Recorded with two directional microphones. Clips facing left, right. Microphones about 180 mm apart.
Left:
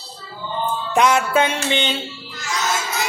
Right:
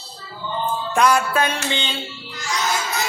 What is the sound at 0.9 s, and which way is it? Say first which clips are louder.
Speech: left 2 dB; 20° left (ahead or behind).